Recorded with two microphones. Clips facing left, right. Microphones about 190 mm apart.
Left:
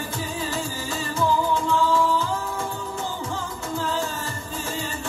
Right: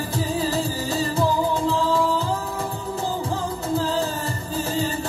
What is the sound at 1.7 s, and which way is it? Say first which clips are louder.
Music: left 2 dB; 35° right (ahead or behind).